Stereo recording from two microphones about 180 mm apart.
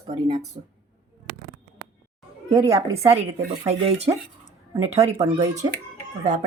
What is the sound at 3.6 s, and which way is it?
Speech, 35° right (ahead or behind).